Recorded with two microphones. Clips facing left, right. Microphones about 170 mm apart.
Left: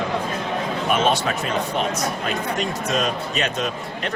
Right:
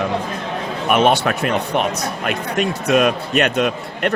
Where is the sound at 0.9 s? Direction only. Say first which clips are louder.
Right 6 dB; 65° right (ahead or behind).